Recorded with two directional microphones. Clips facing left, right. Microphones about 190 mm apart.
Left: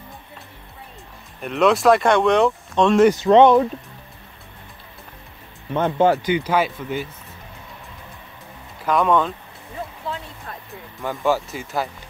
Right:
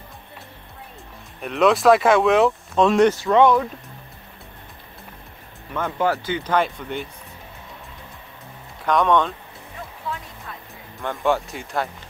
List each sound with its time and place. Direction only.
1.4 s speech: centre (ahead or behind)
3.1 s speech: 20° left (ahead or behind)
5.7 s speech: 25° left (ahead or behind); by 7.1 s 5° left (ahead or behind)
8.8 s speech: 5° left (ahead or behind)
10.1 s music: 30° left (ahead or behind)
11.0 s speech: centre (ahead or behind)